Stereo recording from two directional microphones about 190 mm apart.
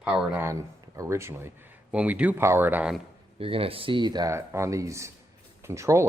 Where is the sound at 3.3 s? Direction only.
30° right (ahead or behind).